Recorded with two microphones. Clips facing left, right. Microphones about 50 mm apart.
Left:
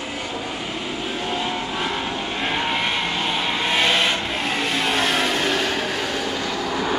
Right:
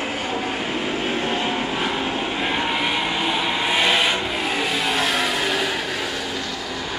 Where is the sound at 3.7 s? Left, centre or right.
Centre.